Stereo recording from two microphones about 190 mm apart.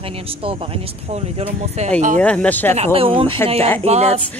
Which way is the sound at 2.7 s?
30° right (ahead or behind).